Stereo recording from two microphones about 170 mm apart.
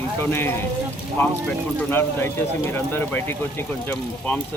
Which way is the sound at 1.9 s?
15° left (ahead or behind).